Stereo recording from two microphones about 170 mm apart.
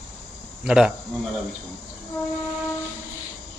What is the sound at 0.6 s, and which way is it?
Speech, 5° right (ahead or behind).